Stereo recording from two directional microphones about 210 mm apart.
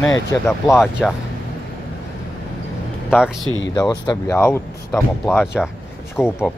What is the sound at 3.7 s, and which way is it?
Speech, 20° left (ahead or behind).